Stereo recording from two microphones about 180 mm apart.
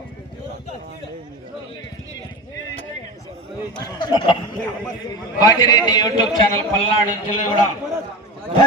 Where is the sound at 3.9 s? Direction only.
25° left (ahead or behind).